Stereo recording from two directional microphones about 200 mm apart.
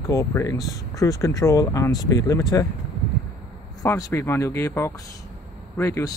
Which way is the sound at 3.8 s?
15° left (ahead or behind).